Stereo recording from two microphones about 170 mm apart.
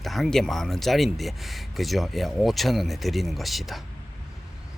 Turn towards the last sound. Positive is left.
turn(degrees=0)  # may be behind; listen again after turning